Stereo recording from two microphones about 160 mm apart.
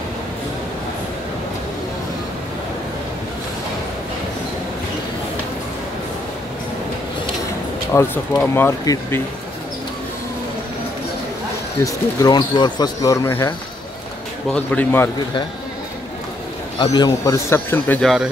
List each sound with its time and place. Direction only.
7.9 s speech: 15° left (ahead or behind)
11.8 s speech: 20° left (ahead or behind)
14.5 s speech: 10° left (ahead or behind)
16.7 s speech: 25° left (ahead or behind)
18.0 s speech: 5° right (ahead or behind)